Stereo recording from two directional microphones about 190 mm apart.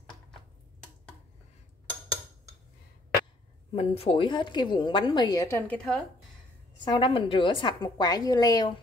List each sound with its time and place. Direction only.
3.7 s a woman's voice: 30° left (ahead or behind); by 6.0 s 5° left (ahead or behind)
6.8 s a woman's voice: 25° left (ahead or behind)